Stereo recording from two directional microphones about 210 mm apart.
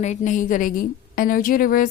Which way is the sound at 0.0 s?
35° left (ahead or behind).